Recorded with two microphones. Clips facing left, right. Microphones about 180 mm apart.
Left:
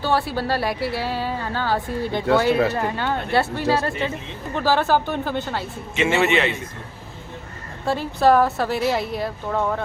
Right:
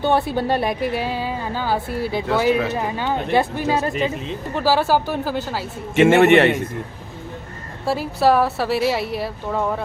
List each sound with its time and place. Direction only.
0.0 s a woman's voice: 20° right (ahead or behind)
6.0 s a man's voice: 55° right (ahead or behind)
7.9 s a woman's voice: 5° right (ahead or behind)